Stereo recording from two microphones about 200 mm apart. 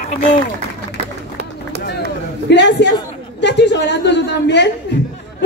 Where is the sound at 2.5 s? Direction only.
60° left (ahead or behind).